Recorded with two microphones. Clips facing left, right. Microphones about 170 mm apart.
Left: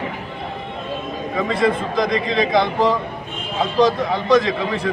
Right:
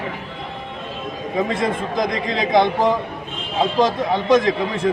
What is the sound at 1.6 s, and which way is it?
A man's voice, 20° right (ahead or behind).